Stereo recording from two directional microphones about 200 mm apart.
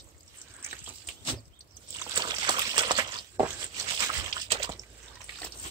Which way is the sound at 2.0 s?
20° right (ahead or behind).